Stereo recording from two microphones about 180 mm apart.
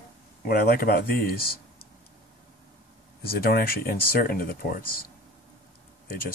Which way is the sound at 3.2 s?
55° left (ahead or behind).